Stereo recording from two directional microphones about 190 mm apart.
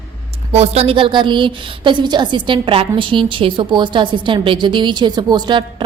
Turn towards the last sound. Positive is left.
turn(degrees=-25)  # may be behind; listen again after turning